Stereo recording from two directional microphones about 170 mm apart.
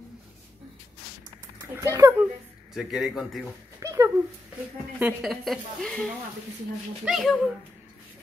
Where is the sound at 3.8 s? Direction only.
15° right (ahead or behind).